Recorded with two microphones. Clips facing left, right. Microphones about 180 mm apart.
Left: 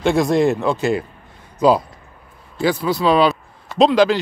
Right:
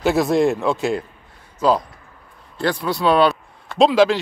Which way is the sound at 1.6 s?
15° left (ahead or behind).